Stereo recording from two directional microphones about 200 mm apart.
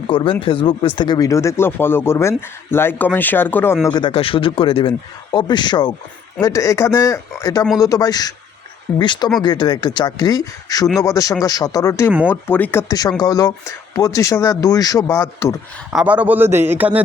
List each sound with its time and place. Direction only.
0.1 s a man's voice: 25° left (ahead or behind)
3.8 s a man's voice: 20° left (ahead or behind)
15.9 s a man's voice: 5° right (ahead or behind)